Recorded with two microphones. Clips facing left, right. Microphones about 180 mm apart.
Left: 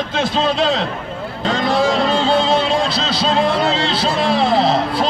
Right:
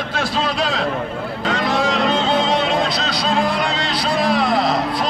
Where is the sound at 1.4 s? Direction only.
30° left (ahead or behind).